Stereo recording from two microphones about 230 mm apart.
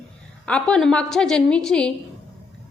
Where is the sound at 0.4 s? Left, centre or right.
Centre.